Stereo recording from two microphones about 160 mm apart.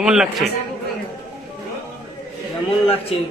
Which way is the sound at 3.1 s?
35° left (ahead or behind).